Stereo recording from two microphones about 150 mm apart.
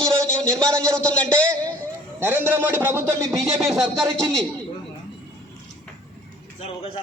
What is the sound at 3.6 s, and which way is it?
Speech, centre (ahead or behind).